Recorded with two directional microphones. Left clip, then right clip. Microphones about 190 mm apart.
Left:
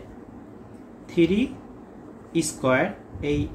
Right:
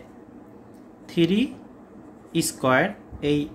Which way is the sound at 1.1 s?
50° right (ahead or behind).